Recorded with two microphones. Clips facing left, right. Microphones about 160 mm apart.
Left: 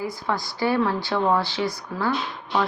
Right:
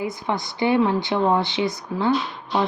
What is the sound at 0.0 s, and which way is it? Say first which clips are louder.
Speech: right 2 dB; 20° right (ahead or behind).